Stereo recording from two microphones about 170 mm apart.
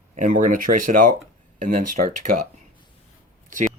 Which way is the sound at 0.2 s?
50° right (ahead or behind).